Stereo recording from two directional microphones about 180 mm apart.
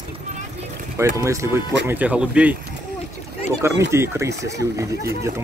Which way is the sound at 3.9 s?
15° right (ahead or behind).